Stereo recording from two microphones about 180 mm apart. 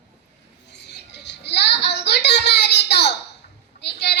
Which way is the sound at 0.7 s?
70° left (ahead or behind).